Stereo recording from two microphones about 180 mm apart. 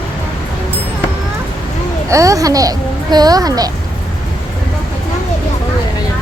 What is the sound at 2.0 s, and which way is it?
A child's voice, 15° right (ahead or behind).